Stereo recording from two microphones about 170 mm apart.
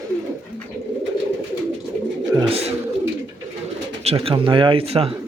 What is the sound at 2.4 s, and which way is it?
Speech, 35° right (ahead or behind).